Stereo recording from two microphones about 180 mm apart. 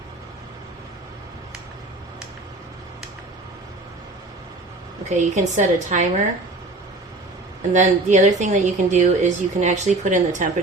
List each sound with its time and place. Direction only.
5.0 s a woman's voice: 40° right (ahead or behind)
7.7 s a woman's voice: 40° right (ahead or behind)